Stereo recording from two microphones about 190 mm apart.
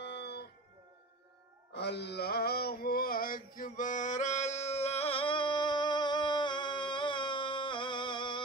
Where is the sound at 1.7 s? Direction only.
60° left (ahead or behind).